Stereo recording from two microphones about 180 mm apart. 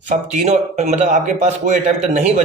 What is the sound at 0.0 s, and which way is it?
A man's voice, 40° right (ahead or behind).